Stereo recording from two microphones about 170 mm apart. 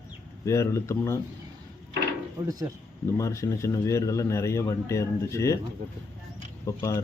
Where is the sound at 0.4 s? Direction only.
15° left (ahead or behind).